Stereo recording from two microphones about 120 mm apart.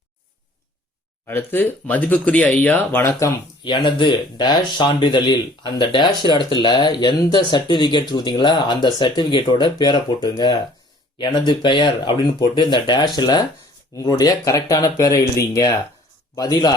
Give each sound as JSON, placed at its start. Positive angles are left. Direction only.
{"t": 1.3, "sound": "speech", "side_deg": 15}
{"t": 3.6, "sound": "speech", "side_deg": 40}